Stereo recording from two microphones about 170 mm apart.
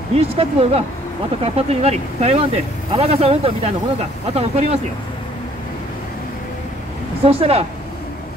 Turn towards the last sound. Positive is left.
turn(degrees=-35)  # may be behind; listen again after turning